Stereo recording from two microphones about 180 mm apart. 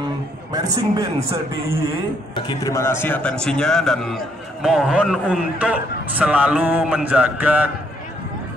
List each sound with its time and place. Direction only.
0.5 s a man's voice: 20° right (ahead or behind)
2.3 s a man's voice: 20° left (ahead or behind); by 7.7 s 10° right (ahead or behind)